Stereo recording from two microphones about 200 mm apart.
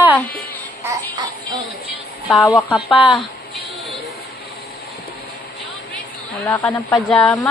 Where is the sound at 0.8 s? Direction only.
15° right (ahead or behind).